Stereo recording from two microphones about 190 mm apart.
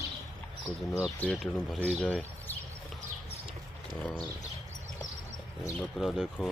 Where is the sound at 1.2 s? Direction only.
5° left (ahead or behind).